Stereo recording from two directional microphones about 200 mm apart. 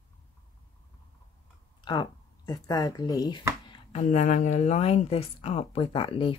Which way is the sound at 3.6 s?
35° left (ahead or behind).